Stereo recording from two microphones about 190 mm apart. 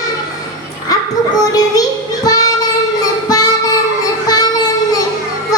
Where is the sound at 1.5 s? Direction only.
20° left (ahead or behind).